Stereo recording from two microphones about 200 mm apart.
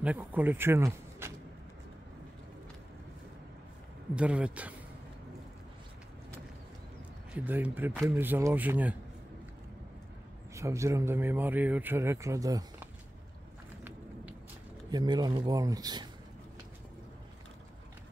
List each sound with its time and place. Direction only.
0.0 s speech: 10° right (ahead or behind)
4.1 s speech: 5° right (ahead or behind)
7.3 s a man's voice: 10° right (ahead or behind)
10.5 s a man's voice: 15° right (ahead or behind)
14.9 s speech: 20° right (ahead or behind)